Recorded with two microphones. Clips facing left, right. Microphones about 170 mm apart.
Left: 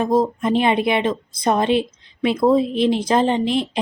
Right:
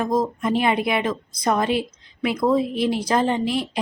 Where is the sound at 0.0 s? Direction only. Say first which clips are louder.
Left 4 dB; 25° left (ahead or behind).